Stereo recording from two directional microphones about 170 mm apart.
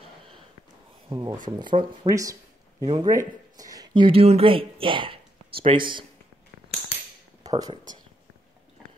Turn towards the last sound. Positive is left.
turn(degrees=-20)  # may be behind; listen again after turning